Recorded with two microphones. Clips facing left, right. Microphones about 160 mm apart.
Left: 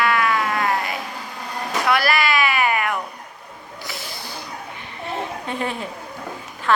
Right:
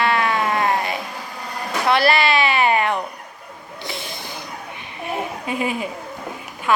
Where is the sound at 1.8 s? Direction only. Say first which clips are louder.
Right 3 dB; 25° right (ahead or behind).